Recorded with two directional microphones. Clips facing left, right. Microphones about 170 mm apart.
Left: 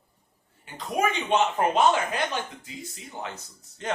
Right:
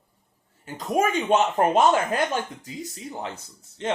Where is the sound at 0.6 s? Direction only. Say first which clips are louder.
Right 3 dB; 45° right (ahead or behind).